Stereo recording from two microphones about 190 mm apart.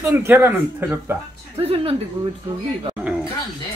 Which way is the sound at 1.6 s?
30° right (ahead or behind).